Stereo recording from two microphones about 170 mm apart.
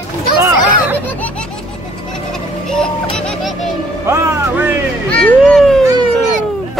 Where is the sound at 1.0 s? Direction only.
10° left (ahead or behind).